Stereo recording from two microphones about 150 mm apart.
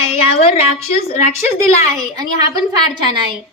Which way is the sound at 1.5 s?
20° right (ahead or behind).